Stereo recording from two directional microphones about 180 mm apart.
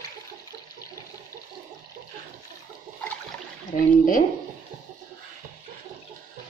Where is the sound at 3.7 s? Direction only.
50° left (ahead or behind).